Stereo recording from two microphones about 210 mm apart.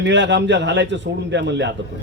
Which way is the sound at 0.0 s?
55° right (ahead or behind).